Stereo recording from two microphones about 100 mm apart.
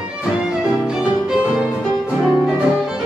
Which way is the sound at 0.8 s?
10° right (ahead or behind).